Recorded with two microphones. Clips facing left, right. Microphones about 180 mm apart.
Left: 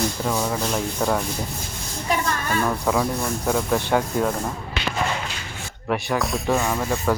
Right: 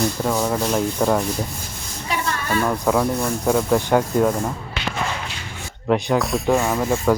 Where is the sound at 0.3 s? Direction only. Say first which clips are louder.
Right 3 dB; 10° right (ahead or behind).